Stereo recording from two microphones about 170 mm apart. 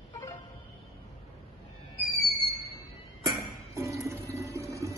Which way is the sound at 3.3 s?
15° right (ahead or behind).